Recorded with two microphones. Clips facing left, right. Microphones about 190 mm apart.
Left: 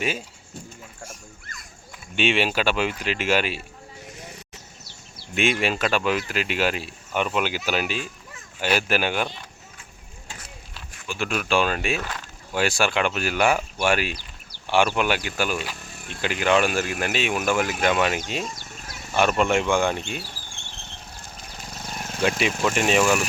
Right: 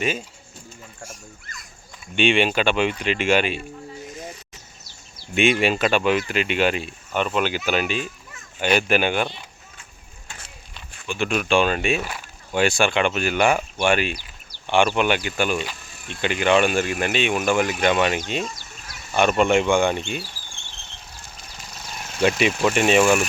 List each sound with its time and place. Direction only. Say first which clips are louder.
2.1 s speech: right 3 dB; 5° left (ahead or behind)
5.3 s speech: right 4 dB; centre (ahead or behind)
11.0 s speech: right 4 dB; 5° left (ahead or behind)
11.9 s speech: right 2 dB; 10° right (ahead or behind)
12.5 s speech: right 3 dB; centre (ahead or behind)
15.8 s a sound: even; 55° left (ahead or behind)
16.2 s speech: right 2 dB; 5° left (ahead or behind)
18.5 s goat: left 2 dB; 50° left (ahead or behind)
19.1 s speech: right 3 dB; centre (ahead or behind)
20.2 s a sound: left 1 dB; 55° left (ahead or behind)
22.6 s speech: right 3 dB; 5° right (ahead or behind)